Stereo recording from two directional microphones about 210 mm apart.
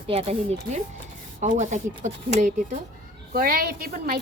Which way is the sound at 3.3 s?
45° right (ahead or behind).